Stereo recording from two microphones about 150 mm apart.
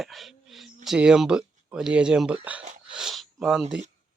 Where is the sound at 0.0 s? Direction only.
Centre (ahead or behind).